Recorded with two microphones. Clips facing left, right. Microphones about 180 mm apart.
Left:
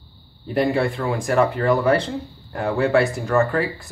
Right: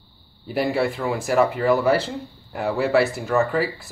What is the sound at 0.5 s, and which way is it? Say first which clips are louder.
Speech: left 2 dB; centre (ahead or behind).